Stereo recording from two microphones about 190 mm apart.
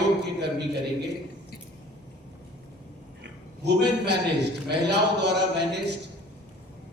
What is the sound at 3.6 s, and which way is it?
A man's voice, 60° right (ahead or behind).